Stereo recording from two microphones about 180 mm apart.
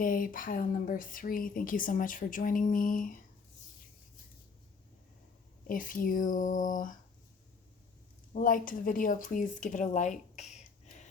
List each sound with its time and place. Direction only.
0.0 s speech: 50° left (ahead or behind)
5.6 s speech: 50° left (ahead or behind)
8.3 s speech: 50° left (ahead or behind)